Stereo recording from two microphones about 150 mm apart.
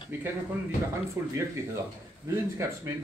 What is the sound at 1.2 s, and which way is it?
Speech, 15° right (ahead or behind).